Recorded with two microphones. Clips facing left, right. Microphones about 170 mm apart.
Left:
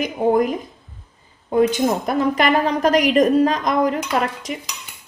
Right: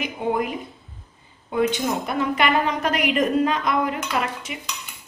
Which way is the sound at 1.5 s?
40° left (ahead or behind).